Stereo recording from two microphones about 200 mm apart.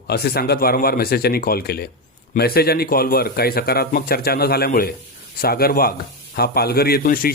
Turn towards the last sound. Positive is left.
turn(degrees=45)  # may be behind; listen again after turning